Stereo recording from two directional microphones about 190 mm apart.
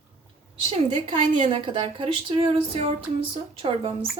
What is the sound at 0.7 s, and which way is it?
A woman's voice, 30° right (ahead or behind).